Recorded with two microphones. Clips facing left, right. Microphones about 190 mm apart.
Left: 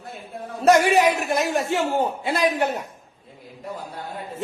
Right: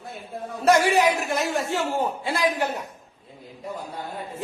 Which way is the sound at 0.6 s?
20° left (ahead or behind).